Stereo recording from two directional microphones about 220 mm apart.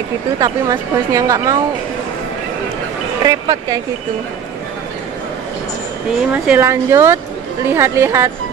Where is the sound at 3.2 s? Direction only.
15° right (ahead or behind).